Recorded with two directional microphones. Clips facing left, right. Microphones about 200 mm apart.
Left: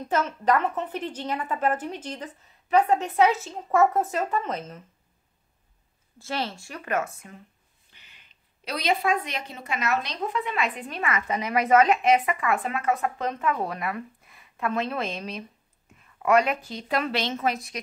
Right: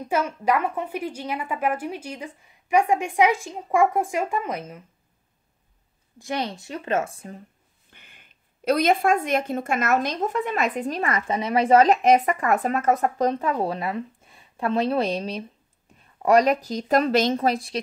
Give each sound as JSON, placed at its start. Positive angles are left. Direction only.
{"t": 0.0, "sound": "a woman's voice", "side_deg": -10}
{"t": 6.1, "sound": "a woman's voice", "side_deg": -15}
{"t": 7.9, "sound": "a woman's voice", "side_deg": -50}